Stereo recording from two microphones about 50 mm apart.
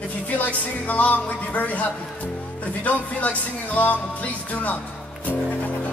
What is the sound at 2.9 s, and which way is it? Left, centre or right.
Music, left.